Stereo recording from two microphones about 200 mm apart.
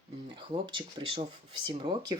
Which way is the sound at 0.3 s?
25° right (ahead or behind).